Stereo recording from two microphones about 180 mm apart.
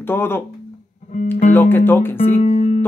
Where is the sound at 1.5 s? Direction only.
10° left (ahead or behind).